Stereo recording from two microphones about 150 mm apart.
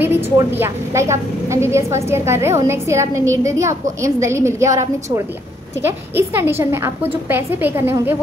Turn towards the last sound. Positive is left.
turn(degrees=-15)  # may be behind; listen again after turning